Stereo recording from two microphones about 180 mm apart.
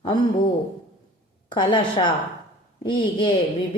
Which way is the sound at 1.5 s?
25° left (ahead or behind).